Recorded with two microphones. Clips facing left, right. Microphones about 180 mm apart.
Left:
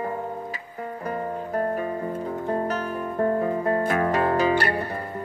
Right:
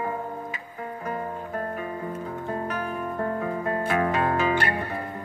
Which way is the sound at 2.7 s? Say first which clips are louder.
Left 2 dB; 40° left (ahead or behind).